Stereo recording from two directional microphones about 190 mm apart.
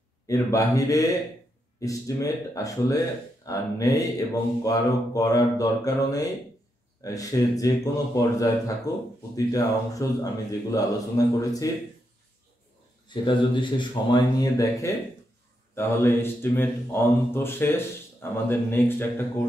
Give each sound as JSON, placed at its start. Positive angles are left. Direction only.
{"t": 0.3, "sound": "speech", "side_deg": 15}
{"t": 13.1, "sound": "speech", "side_deg": 25}